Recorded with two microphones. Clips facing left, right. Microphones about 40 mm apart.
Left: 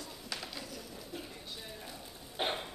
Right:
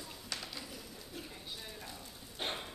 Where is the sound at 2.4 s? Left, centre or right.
Left.